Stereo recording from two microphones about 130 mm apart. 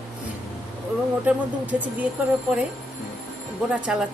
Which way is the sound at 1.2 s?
10° right (ahead or behind).